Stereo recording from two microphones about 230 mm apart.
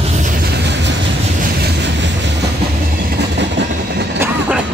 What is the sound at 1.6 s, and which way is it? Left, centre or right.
Train, right.